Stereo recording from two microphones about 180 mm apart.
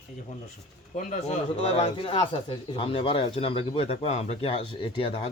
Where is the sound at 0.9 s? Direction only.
45° left (ahead or behind).